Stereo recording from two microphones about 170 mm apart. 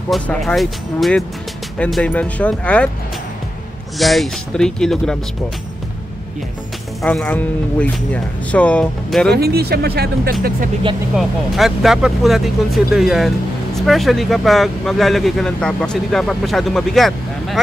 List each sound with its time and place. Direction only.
0.1 s speech: centre (ahead or behind)
4.0 s speech: centre (ahead or behind)
7.0 s speech: 5° left (ahead or behind)
9.3 s speech: 70° right (ahead or behind)
11.1 s speech: centre (ahead or behind)